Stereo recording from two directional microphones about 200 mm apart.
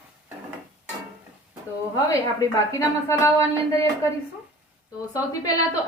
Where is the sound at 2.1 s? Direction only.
15° left (ahead or behind).